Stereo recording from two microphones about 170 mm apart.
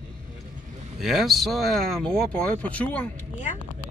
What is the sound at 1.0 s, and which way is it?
Speech, centre (ahead or behind).